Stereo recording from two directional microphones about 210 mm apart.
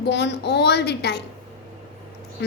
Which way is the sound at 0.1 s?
55° left (ahead or behind).